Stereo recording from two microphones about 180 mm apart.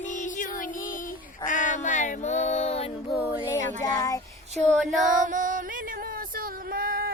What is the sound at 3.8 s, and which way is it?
Child singing, 20° left (ahead or behind).